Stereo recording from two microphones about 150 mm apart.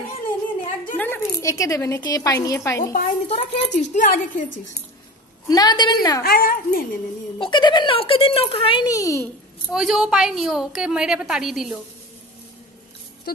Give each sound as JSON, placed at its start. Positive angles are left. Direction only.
{"t": 0.9, "sound": "a woman's voice", "side_deg": 15}
{"t": 2.8, "sound": "a woman's voice", "side_deg": 60}
{"t": 5.5, "sound": "a woman's voice", "side_deg": 25}
{"t": 6.2, "sound": "speech", "side_deg": 75}
{"t": 7.3, "sound": "speech", "side_deg": 30}
{"t": 9.7, "sound": "a woman's voice", "side_deg": 0}